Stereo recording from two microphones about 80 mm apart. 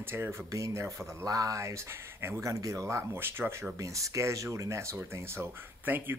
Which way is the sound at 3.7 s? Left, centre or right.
Right.